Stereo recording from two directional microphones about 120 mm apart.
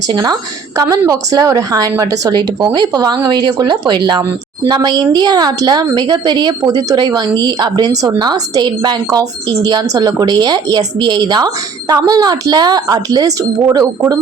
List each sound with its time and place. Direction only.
0.1 s speech: 35° right (ahead or behind)